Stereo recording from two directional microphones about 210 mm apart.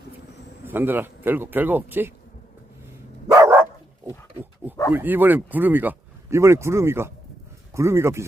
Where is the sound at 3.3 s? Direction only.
10° right (ahead or behind).